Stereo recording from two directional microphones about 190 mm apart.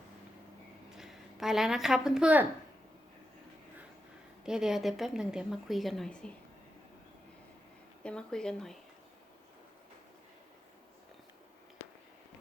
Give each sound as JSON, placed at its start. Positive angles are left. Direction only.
{"t": 0.9, "sound": "a woman's voice", "side_deg": 0}
{"t": 4.4, "sound": "a woman's voice", "side_deg": -5}
{"t": 8.0, "sound": "a woman's voice", "side_deg": 5}